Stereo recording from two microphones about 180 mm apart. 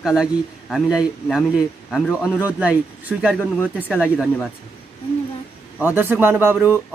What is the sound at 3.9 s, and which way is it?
Speech, 10° left (ahead or behind).